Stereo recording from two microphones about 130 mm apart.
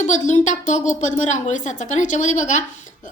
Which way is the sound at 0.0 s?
70° left (ahead or behind).